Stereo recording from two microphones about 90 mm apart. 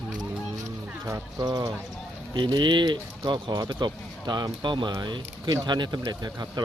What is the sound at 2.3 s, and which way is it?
Speech, 55° right (ahead or behind).